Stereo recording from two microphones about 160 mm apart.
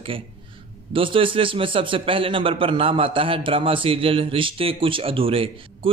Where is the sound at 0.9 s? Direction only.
35° right (ahead or behind).